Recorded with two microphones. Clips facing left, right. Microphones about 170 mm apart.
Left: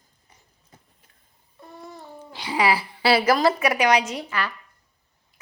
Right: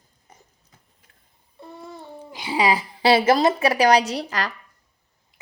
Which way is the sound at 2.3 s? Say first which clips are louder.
Right 1 dB; 15° right (ahead or behind).